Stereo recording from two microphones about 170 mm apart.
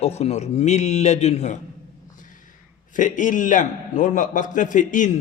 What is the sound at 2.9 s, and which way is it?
A man's voice, 50° left (ahead or behind).